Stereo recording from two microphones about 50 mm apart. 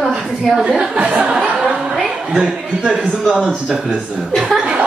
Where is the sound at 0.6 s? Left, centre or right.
Right.